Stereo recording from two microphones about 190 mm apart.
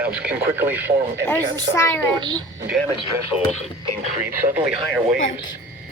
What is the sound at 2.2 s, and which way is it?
Speech, 20° right (ahead or behind).